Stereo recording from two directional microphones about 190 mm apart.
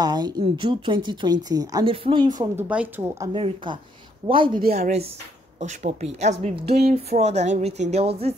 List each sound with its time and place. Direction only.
0.0 s a woman's voice: 20° right (ahead or behind)
2.7 s a woman's voice: 10° right (ahead or behind)
3.3 s a woman's voice: 30° right (ahead or behind)
4.7 s speech: 35° right (ahead or behind)
6.6 s a sound: 60° right (ahead or behind)
6.9 s speech: 35° right (ahead or behind)